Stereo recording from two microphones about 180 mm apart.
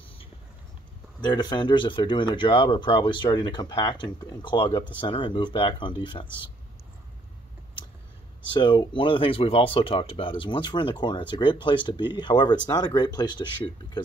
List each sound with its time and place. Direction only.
1.2 s speech: 25° left (ahead or behind)
8.5 s speech: 25° left (ahead or behind)